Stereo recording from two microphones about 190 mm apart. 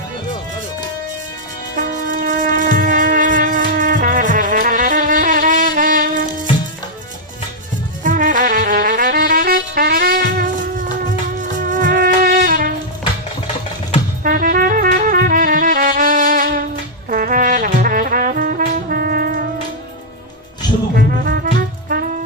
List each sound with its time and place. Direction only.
1.7 s wind instrument: 45° right (ahead or behind)
8.0 s music: 45° right (ahead or behind)
11.7 s music: 45° right (ahead or behind)
14.3 s music: 45° right (ahead or behind)
17.1 s brass instrument: 45° right (ahead or behind)
20.9 s music: 55° right (ahead or behind)